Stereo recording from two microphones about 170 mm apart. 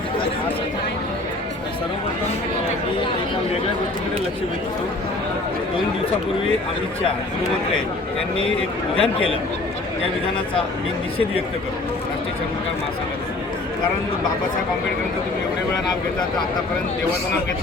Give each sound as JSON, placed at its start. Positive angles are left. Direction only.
{"t": 9.0, "sound": "speech", "side_deg": 35}